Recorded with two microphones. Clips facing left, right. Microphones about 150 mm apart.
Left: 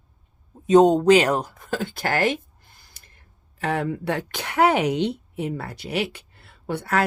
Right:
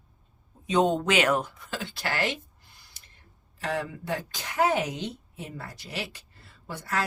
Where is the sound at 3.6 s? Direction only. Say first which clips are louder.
Left 6 dB; 60° left (ahead or behind).